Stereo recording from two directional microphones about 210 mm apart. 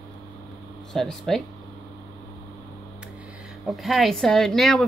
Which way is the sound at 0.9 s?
Centre (ahead or behind).